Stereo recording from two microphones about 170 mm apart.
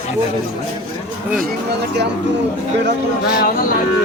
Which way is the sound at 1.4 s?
75° right (ahead or behind).